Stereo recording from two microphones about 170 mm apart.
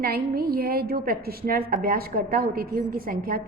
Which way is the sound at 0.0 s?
60° right (ahead or behind).